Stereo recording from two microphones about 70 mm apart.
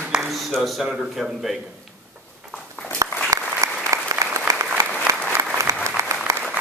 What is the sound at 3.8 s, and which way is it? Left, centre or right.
Applause, right.